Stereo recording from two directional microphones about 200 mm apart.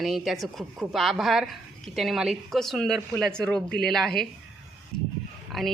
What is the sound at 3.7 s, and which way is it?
Speech, 50° left (ahead or behind).